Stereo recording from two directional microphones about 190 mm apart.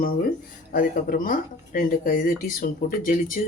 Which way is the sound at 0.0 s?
50° left (ahead or behind).